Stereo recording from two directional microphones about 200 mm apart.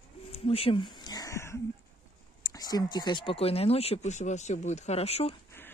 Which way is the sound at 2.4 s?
20° left (ahead or behind).